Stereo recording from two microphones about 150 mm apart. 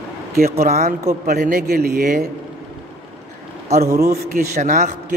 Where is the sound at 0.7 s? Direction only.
50° right (ahead or behind).